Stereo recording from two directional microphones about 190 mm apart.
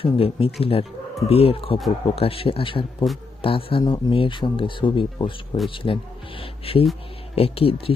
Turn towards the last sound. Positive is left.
turn(degrees=30)  # may be behind; listen again after turning